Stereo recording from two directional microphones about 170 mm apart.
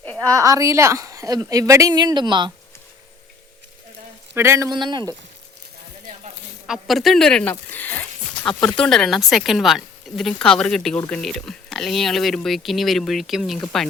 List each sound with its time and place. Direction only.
0.0 s a sound: 10° left (ahead or behind)
0.3 s a woman's voice: 20° right (ahead or behind)
4.4 s a woman's voice: 15° right (ahead or behind)
6.7 s speech: centre (ahead or behind)
7.7 s a sound: 10° left (ahead or behind)
8.4 s speech: 5° left (ahead or behind)